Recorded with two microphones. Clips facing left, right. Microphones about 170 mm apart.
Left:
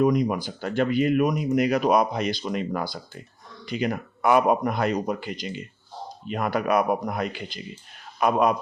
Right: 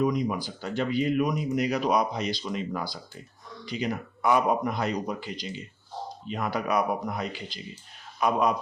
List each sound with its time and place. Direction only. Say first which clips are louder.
0.0 s speech: left 5 dB; 60° left (ahead or behind)